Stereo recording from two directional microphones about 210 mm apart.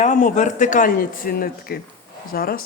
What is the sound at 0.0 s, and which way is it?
A woman's voice, 35° left (ahead or behind).